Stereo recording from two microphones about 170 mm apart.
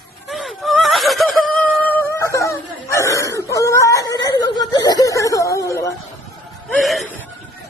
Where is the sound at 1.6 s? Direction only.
10° left (ahead or behind).